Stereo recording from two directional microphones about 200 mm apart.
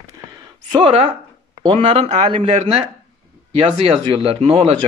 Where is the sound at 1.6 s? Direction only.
30° right (ahead or behind).